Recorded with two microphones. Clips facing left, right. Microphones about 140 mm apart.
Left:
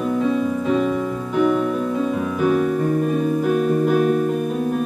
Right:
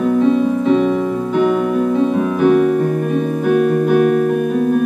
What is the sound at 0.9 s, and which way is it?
Music, 40° right (ahead or behind).